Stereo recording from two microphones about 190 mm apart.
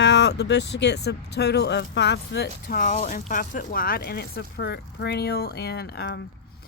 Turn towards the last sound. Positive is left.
turn(degrees=60)  # may be behind; listen again after turning